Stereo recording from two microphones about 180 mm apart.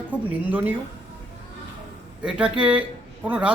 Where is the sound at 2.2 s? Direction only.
5° right (ahead or behind).